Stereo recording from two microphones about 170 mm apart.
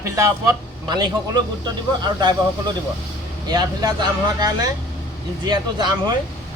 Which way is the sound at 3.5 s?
25° right (ahead or behind).